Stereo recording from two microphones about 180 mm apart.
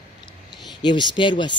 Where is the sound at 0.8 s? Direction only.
25° left (ahead or behind).